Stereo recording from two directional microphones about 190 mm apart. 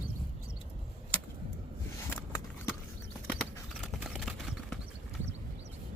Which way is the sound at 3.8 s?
Centre (ahead or behind).